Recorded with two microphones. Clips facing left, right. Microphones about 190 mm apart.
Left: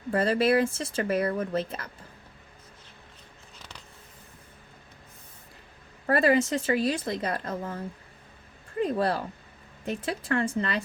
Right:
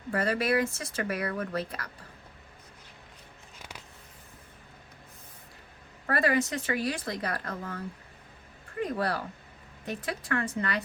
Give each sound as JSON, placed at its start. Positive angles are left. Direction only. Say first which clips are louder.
{"t": 0.1, "sound": "speech", "louder": "left 4 dB", "side_deg": 30}
{"t": 6.1, "sound": "speech", "louder": "left 4 dB", "side_deg": 25}